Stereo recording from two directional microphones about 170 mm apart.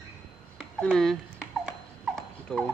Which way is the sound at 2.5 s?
5° left (ahead or behind).